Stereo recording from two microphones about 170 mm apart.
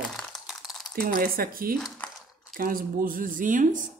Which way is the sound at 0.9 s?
60° right (ahead or behind).